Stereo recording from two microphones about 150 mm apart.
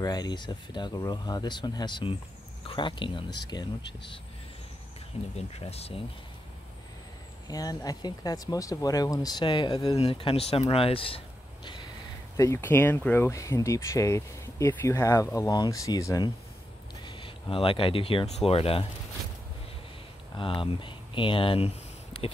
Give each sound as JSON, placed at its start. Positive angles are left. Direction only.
{"t": 0.0, "sound": "speech", "side_deg": 25}
{"t": 5.3, "sound": "speech", "side_deg": 45}
{"t": 7.4, "sound": "speech", "side_deg": 25}
{"t": 9.9, "sound": "speech", "side_deg": 40}
{"t": 12.4, "sound": "speech", "side_deg": 20}
{"t": 20.3, "sound": "speech", "side_deg": 35}